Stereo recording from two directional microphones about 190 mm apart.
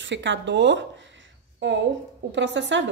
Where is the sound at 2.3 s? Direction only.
70° right (ahead or behind).